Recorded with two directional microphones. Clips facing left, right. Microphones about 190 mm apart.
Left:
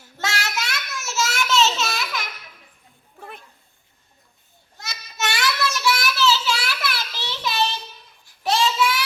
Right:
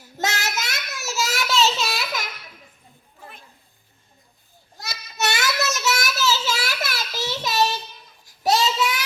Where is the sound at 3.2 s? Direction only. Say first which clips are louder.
Left 5 dB; 60° left (ahead or behind).